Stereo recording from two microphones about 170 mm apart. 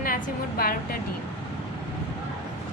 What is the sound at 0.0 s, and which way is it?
Speech, 60° left (ahead or behind).